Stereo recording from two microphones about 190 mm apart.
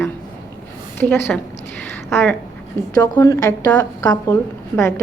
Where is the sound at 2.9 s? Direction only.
20° left (ahead or behind).